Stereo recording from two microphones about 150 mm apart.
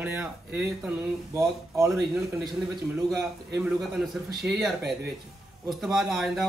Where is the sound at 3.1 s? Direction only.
5° right (ahead or behind).